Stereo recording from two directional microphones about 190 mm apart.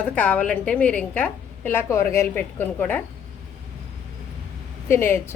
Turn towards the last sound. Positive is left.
turn(degrees=15)  # may be behind; listen again after turning